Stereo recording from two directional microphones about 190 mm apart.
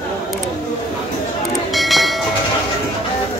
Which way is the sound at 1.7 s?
Centre (ahead or behind).